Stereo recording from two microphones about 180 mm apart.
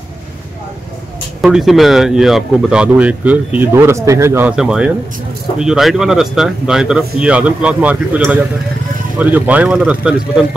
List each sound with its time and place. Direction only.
1.4 s speech: centre (ahead or behind)